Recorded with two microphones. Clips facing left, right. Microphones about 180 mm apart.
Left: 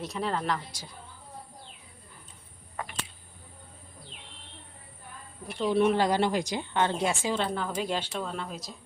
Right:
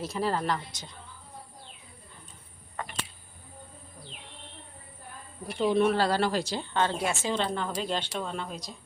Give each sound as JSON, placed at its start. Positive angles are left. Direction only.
{"t": 0.0, "sound": "speech", "side_deg": 0}
{"t": 5.5, "sound": "speech", "side_deg": 0}
{"t": 5.8, "sound": "speech", "side_deg": 15}